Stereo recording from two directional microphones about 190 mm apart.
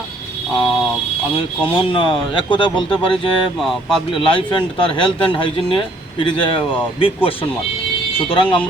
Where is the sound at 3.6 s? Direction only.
Centre (ahead or behind).